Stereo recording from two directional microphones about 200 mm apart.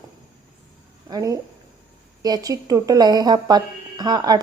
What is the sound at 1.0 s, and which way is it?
A woman's voice, 20° right (ahead or behind).